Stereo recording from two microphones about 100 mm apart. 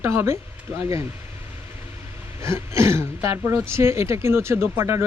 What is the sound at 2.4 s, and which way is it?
Speech, 25° right (ahead or behind).